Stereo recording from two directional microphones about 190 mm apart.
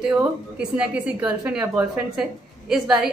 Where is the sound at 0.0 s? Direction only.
5° right (ahead or behind).